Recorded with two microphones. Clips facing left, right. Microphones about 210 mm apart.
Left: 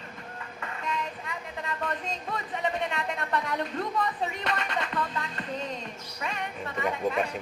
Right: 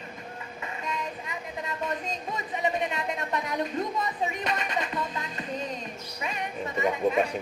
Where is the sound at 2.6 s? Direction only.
15° right (ahead or behind).